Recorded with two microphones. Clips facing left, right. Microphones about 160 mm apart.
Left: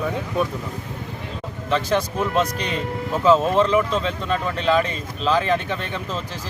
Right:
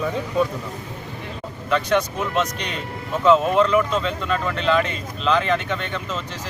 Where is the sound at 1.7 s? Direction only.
30° left (ahead or behind).